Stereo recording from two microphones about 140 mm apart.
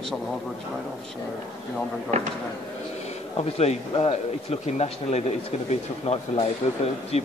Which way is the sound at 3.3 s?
50° left (ahead or behind).